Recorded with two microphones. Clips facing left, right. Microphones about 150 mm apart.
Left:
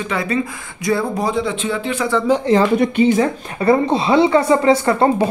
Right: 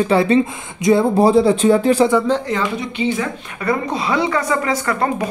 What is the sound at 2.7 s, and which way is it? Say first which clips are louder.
Speech: left 7 dB; 45° left (ahead or behind).